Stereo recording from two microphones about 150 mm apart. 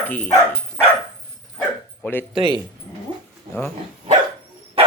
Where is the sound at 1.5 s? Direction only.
15° left (ahead or behind).